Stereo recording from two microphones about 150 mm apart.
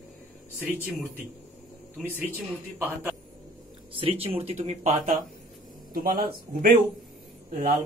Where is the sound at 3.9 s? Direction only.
40° right (ahead or behind); by 5.2 s 55° right (ahead or behind).